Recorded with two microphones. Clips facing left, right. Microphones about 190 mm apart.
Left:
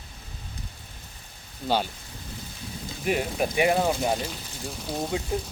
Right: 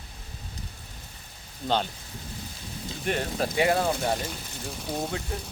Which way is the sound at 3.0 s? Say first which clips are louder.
Left 2 dB; 10° left (ahead or behind).